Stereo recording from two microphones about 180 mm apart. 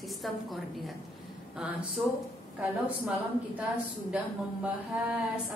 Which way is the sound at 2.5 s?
10° right (ahead or behind).